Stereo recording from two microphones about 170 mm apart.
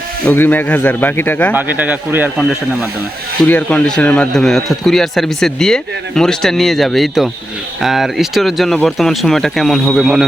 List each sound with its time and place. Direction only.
0.3 s a man's voice: 10° left (ahead or behind)
1.5 s speech: 10° right (ahead or behind)
3.4 s a man's voice: 5° left (ahead or behind)